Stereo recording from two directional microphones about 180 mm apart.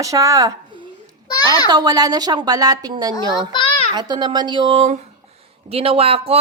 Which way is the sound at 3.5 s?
25° left (ahead or behind).